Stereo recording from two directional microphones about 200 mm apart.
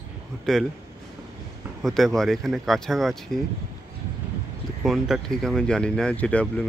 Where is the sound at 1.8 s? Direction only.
Centre (ahead or behind).